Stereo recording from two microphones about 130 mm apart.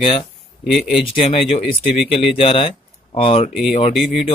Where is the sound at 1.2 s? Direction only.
50° left (ahead or behind).